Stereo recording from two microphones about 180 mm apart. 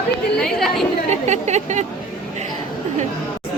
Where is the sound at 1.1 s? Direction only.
40° right (ahead or behind).